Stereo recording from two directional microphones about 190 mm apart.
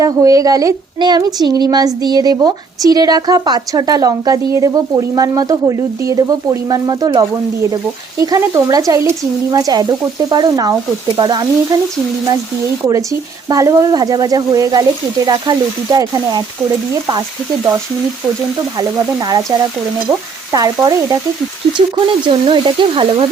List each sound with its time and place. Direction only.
0.0 s speech: 15° right (ahead or behind)
12.8 s speech: 15° right (ahead or behind)
18.8 s speech: 20° right (ahead or behind)